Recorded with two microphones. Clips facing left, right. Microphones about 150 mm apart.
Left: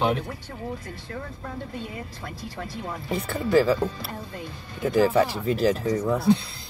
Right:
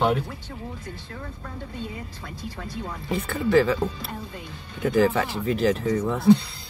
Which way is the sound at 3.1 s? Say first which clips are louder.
Right 1 dB; 35° left (ahead or behind).